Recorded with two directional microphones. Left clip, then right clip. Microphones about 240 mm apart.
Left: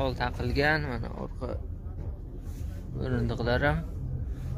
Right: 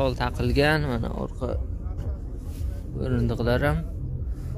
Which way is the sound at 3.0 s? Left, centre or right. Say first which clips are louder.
Right 4 dB; centre.